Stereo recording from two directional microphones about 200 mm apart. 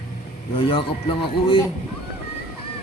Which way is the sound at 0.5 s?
25° left (ahead or behind).